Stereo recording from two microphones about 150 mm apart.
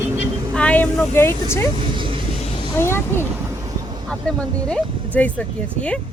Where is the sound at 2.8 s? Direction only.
15° left (ahead or behind).